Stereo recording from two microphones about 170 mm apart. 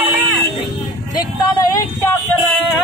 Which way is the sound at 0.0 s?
10° right (ahead or behind).